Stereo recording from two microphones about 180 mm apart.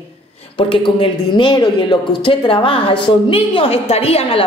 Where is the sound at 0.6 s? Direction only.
30° left (ahead or behind).